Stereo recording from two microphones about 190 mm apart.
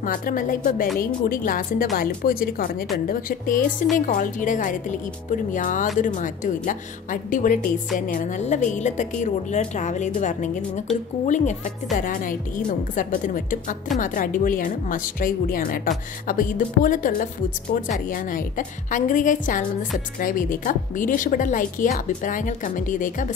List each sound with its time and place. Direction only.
0.0 s a woman's voice: 45° left (ahead or behind)